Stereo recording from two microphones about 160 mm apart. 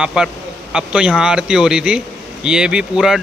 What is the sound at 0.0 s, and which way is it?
Speech, 5° right (ahead or behind).